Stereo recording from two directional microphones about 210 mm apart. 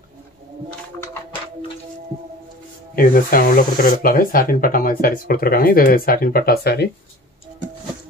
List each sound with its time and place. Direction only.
3.0 s speech: 45° left (ahead or behind)